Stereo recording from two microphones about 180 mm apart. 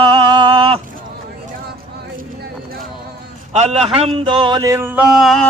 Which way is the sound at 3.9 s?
35° right (ahead or behind).